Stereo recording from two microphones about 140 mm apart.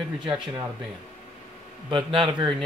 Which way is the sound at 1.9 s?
35° right (ahead or behind).